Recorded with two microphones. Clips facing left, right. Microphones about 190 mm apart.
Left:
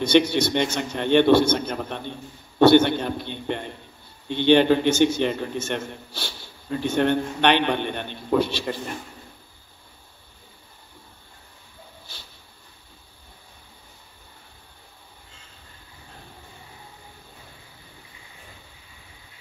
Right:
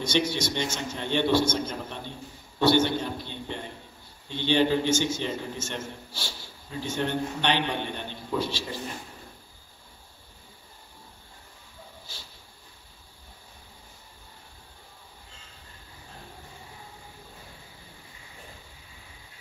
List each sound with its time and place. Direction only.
0.0 s a man's voice: 60° left (ahead or behind)